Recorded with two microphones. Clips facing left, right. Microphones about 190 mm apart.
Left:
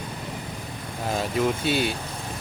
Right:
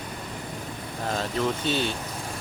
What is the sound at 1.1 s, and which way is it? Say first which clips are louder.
Speech: left 3 dB; 10° left (ahead or behind).